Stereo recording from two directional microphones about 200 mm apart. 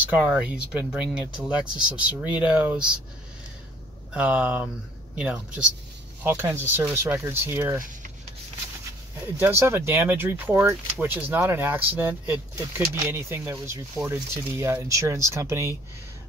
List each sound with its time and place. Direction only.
0.1 s speech: 5° right (ahead or behind)
4.1 s speech: 5° right (ahead or behind)
8.8 s speech: 10° right (ahead or behind)